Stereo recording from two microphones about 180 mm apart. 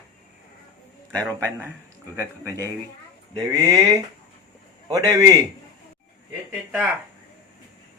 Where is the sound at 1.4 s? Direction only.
10° right (ahead or behind).